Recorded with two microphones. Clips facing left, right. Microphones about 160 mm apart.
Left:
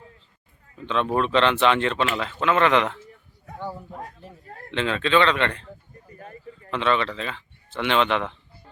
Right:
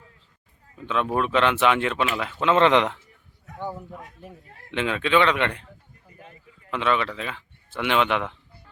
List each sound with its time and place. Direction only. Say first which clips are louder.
0.9 s speech: left 1 dB; 5° right (ahead or behind)
2.4 s speech: right 2 dB; 20° right (ahead or behind)
4.4 s speech: left 8 dB; 50° left (ahead or behind)
4.7 s speech: even; 10° right (ahead or behind)
6.7 s speech: left 1 dB; 10° right (ahead or behind)